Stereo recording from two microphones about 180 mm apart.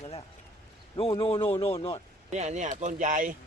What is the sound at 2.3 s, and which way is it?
Speech, 40° right (ahead or behind).